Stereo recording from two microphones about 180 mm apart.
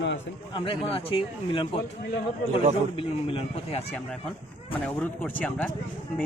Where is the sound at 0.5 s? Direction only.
30° left (ahead or behind).